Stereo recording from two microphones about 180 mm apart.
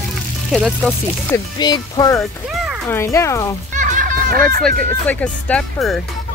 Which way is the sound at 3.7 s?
50° right (ahead or behind).